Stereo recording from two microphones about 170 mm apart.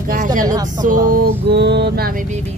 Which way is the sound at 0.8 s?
55° right (ahead or behind).